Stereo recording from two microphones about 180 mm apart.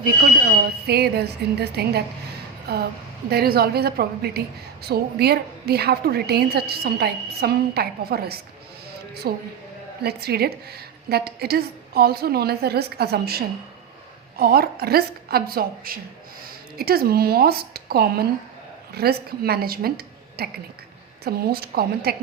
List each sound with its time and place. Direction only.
0.0 s a woman's voice: 55° right (ahead or behind)